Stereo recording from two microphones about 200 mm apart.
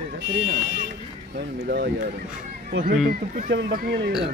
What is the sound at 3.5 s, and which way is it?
Speech, 55° right (ahead or behind).